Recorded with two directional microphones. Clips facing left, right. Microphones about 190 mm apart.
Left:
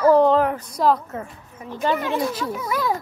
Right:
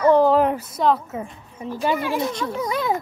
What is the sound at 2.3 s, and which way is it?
Speech, 5° left (ahead or behind).